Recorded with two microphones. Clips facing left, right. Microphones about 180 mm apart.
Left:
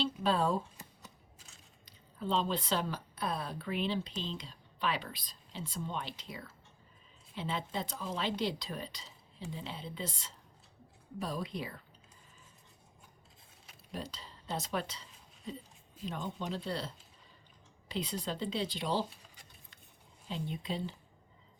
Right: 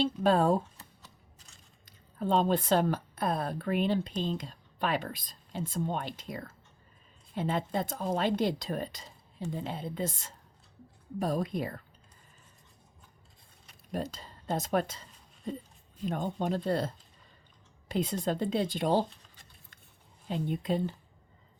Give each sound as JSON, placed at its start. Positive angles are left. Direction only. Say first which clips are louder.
{"t": 0.0, "sound": "speech", "louder": "right 6 dB", "side_deg": -50}
{"t": 1.8, "sound": "a woman's voice", "louder": "right 6 dB", "side_deg": -50}
{"t": 13.9, "sound": "speech", "louder": "right 7 dB", "side_deg": -50}
{"t": 16.0, "sound": "speech", "louder": "right 7 dB", "side_deg": -50}
{"t": 19.1, "sound": "a sound", "louder": "left 1 dB", "side_deg": 10}
{"t": 20.2, "sound": "speech", "louder": "right 7 dB", "side_deg": -50}